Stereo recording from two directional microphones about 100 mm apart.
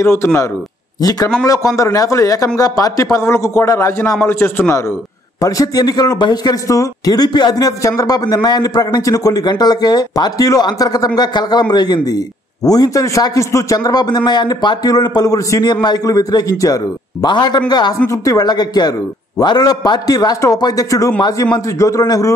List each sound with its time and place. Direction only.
0.0 s a man's voice: 25° left (ahead or behind); by 17.9 s 45° left (ahead or behind)
18.0 s speech: 35° left (ahead or behind)